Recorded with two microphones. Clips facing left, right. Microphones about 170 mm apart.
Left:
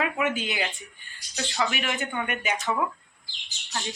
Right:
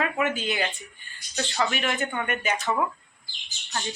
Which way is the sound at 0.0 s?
15° left (ahead or behind).